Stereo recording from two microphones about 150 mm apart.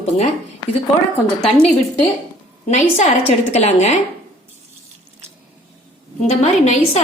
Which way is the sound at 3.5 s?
50° left (ahead or behind).